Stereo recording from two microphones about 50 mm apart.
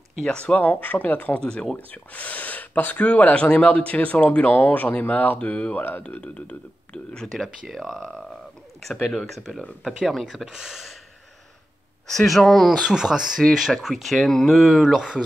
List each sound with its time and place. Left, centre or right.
0.2 s speech: centre
0.6 s speech: left
1.4 s speech: centre
2.1 s speech: left
7.4 s speech: centre
12.1 s speech: centre
12.7 s speech: centre
14.1 s speech: centre
15.0 s speech: centre